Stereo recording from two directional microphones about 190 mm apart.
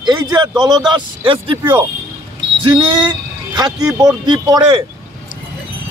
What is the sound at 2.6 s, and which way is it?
Speech, 25° right (ahead or behind).